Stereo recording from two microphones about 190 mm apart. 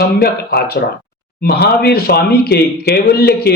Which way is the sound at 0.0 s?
55° left (ahead or behind).